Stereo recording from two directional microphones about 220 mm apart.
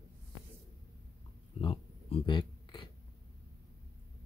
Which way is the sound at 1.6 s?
25° left (ahead or behind).